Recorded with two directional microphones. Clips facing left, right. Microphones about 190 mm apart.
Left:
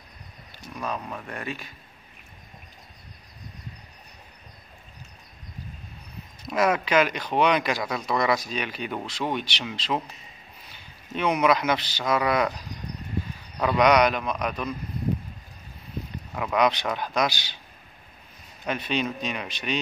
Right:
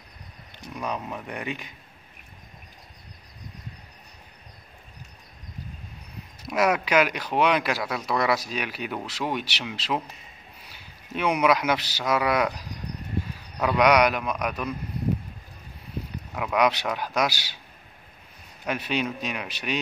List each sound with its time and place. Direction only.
0.7 s speech: 15° right (ahead or behind)
6.4 s a man's voice: 10° right (ahead or behind)
13.6 s speech: 5° right (ahead or behind)
16.3 s speech: 5° right (ahead or behind)
18.7 s speech: 10° right (ahead or behind)